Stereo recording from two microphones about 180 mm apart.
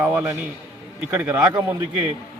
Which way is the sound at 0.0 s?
10° right (ahead or behind).